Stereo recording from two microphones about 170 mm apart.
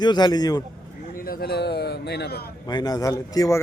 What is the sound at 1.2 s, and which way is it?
A man's voice, 60° left (ahead or behind).